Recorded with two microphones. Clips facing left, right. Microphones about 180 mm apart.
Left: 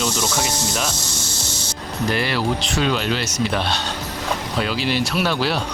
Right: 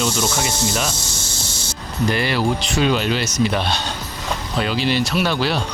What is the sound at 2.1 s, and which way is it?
Speech, centre (ahead or behind).